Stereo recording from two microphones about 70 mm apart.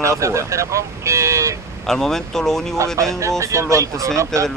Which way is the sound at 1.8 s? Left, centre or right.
Centre.